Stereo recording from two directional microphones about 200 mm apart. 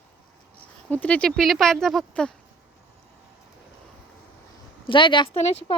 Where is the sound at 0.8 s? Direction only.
5° left (ahead or behind).